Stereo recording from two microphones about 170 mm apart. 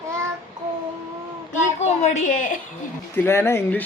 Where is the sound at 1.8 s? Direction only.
50° left (ahead or behind).